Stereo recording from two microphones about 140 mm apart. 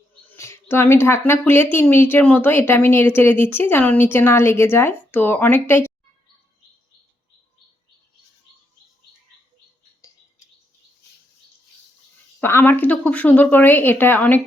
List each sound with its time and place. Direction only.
0.3 s a woman's voice: 20° left (ahead or behind)
12.4 s a woman's voice: 15° left (ahead or behind)